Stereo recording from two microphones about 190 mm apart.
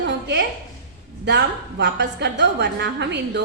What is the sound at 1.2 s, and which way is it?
A woman's voice, 65° right (ahead or behind).